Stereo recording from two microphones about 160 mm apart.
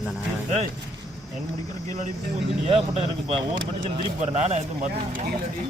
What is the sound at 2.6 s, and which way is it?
A man's voice, 40° right (ahead or behind).